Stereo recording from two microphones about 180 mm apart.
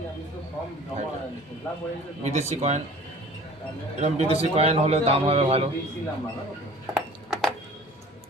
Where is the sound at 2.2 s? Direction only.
40° right (ahead or behind).